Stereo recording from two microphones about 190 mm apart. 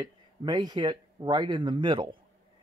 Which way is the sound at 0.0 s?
25° right (ahead or behind).